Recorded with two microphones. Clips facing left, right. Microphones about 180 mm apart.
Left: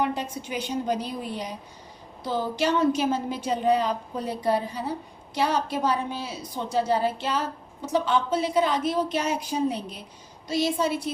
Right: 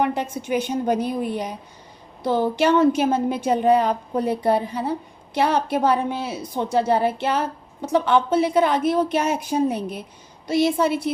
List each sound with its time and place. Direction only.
0.0 s a woman's voice: 55° right (ahead or behind)